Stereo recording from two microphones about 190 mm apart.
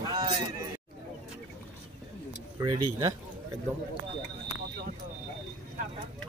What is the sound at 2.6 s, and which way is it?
Speech, 20° right (ahead or behind).